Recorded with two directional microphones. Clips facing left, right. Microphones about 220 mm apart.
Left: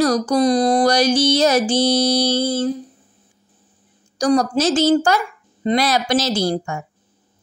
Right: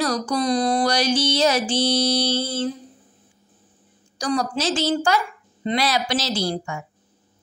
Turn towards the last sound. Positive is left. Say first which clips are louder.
# left 5 dB
turn(degrees=45)  # may be behind; listen again after turning